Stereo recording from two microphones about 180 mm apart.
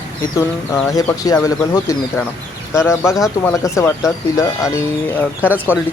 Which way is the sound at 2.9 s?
15° left (ahead or behind).